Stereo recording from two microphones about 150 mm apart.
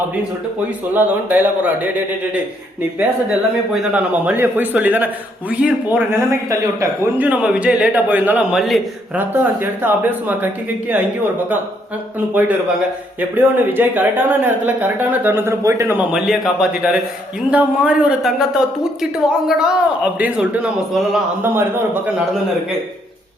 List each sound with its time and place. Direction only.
0.9 s speech: 10° right (ahead or behind)
3.9 s speech: 10° right (ahead or behind)
7.2 s speech: 10° right (ahead or behind)
9.1 s speech: 10° right (ahead or behind)
12.3 s speech: 10° right (ahead or behind)
16.0 s a man's voice: centre (ahead or behind)
21.4 s speech: 15° right (ahead or behind)